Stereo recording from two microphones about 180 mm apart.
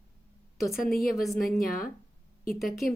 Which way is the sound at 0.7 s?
Centre (ahead or behind).